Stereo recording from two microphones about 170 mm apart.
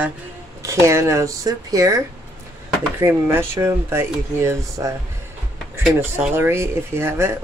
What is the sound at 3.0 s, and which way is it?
Speech, 15° right (ahead or behind).